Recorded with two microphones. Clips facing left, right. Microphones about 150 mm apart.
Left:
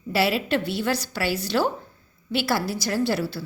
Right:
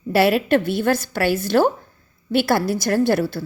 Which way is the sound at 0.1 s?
55° right (ahead or behind).